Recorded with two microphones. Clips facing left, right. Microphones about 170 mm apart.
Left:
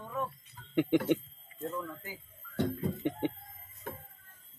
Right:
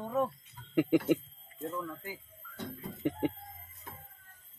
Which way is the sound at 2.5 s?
70° left (ahead or behind).